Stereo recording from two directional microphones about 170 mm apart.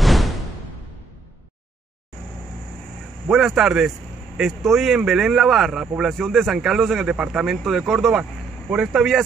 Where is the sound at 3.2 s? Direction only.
Centre (ahead or behind).